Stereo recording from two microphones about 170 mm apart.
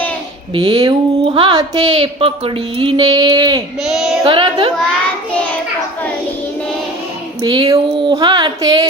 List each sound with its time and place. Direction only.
0.5 s speech: 25° right (ahead or behind)
3.8 s child singing: 5° right (ahead or behind)
4.2 s speech: 30° right (ahead or behind)
7.4 s speech: 25° right (ahead or behind)